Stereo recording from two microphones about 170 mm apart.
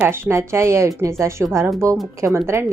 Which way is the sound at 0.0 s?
15° right (ahead or behind).